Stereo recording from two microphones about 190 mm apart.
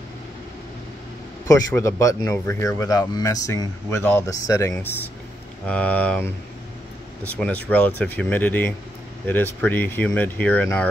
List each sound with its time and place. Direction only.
1.5 s speech: 15° left (ahead or behind)